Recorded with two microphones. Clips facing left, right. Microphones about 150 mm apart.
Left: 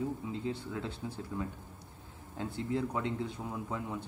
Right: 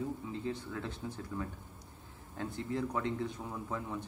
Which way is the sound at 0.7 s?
10° left (ahead or behind).